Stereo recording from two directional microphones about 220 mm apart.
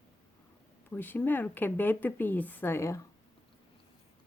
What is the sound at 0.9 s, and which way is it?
Speech, 10° left (ahead or behind).